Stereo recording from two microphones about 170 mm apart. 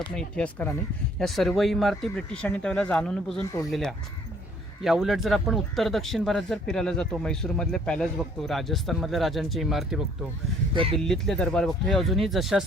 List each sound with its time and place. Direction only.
0.2 s speech: 5° left (ahead or behind)